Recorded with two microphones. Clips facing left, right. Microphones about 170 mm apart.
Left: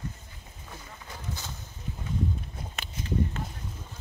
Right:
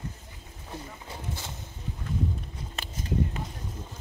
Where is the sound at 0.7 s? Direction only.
30° right (ahead or behind).